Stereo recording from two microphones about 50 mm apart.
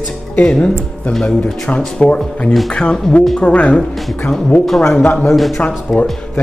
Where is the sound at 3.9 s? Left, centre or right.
Centre.